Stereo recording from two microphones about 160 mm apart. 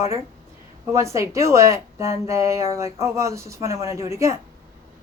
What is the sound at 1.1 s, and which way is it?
Speech, 20° right (ahead or behind).